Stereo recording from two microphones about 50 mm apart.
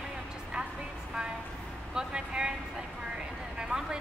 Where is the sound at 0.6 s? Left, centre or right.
Centre.